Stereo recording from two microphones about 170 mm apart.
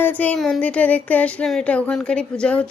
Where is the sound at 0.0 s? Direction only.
10° left (ahead or behind).